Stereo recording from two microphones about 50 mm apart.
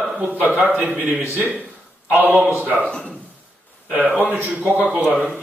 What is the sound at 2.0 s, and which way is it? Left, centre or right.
Speech, right.